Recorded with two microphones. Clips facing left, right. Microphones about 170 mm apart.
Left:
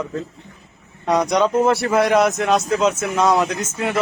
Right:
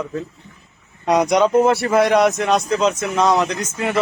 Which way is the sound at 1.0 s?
20° right (ahead or behind).